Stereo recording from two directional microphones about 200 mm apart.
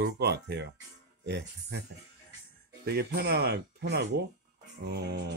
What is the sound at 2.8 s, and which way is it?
Speech, 50° right (ahead or behind).